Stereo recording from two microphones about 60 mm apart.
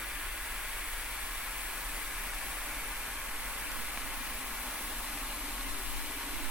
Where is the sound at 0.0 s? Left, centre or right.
Centre.